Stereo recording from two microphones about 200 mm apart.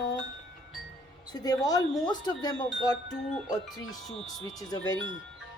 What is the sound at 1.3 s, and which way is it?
Speech, 20° left (ahead or behind).